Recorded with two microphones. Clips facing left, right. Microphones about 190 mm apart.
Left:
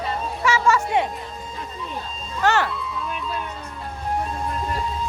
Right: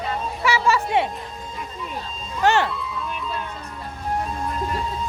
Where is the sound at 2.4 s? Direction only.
20° right (ahead or behind).